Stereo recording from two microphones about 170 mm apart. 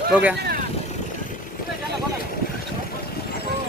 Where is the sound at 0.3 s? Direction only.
70° right (ahead or behind).